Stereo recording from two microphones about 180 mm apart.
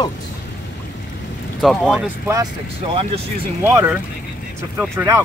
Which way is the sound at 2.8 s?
30° right (ahead or behind).